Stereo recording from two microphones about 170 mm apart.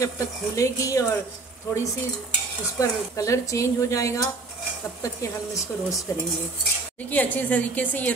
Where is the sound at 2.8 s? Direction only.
20° left (ahead or behind).